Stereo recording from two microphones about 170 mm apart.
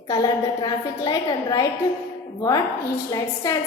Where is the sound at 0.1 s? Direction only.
20° left (ahead or behind).